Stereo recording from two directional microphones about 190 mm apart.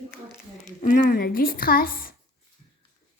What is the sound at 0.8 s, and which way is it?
Speech, 45° left (ahead or behind).